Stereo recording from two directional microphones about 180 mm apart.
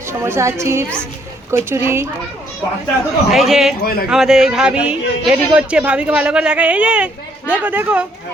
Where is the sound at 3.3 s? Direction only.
Centre (ahead or behind).